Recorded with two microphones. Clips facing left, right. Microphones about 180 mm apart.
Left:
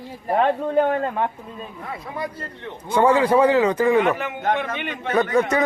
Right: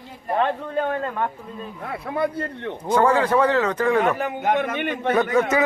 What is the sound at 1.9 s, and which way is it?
Speech, 60° right (ahead or behind).